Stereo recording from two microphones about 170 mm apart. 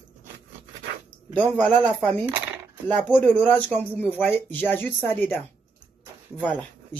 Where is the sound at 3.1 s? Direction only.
10° left (ahead or behind).